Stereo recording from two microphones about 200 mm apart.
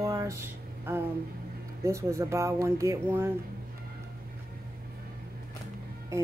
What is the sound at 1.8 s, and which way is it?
Speech, 15° right (ahead or behind).